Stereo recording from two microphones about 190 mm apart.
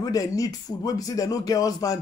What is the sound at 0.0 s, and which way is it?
A man's voice, 20° left (ahead or behind).